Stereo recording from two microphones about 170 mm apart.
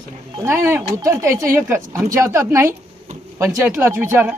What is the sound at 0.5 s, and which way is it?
A man's voice, 15° right (ahead or behind).